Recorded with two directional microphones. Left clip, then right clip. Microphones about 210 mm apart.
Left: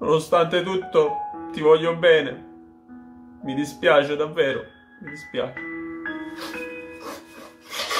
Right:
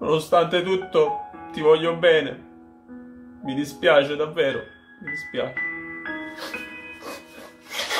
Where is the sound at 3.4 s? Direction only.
5° left (ahead or behind).